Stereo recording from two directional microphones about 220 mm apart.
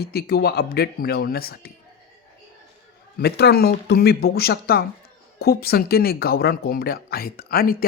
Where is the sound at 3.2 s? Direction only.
45° left (ahead or behind).